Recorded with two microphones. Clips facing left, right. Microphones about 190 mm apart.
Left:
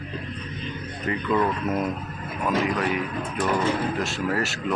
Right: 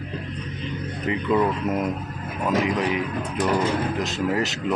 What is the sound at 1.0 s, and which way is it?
Speech, 15° right (ahead or behind).